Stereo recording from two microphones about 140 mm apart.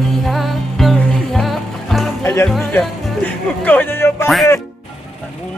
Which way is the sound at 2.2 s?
20° left (ahead or behind).